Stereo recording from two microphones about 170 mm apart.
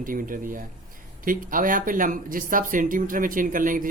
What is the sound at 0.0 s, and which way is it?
Speech, 55° right (ahead or behind).